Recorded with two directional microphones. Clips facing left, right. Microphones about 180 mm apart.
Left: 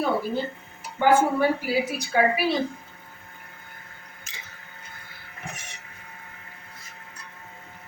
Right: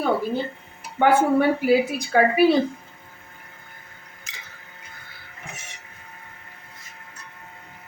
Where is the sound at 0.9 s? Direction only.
60° right (ahead or behind).